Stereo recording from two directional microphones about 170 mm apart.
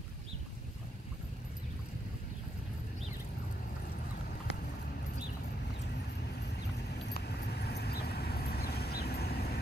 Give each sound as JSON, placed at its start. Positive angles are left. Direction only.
{"t": 7.1, "sound": "vehicle", "side_deg": 70}